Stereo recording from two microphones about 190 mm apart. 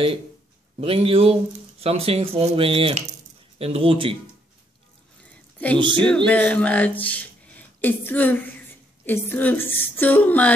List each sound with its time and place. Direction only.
0.7 s speech: 30° right (ahead or behind)
5.8 s speech: 25° right (ahead or behind)
6.1 s a woman's voice: 5° left (ahead or behind)